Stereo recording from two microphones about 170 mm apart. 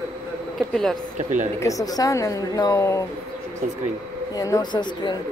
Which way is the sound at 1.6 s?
20° left (ahead or behind).